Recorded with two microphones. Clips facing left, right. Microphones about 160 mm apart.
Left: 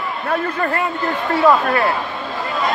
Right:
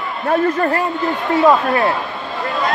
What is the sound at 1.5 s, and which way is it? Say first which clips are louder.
Speech: right 1 dB; 25° right (ahead or behind).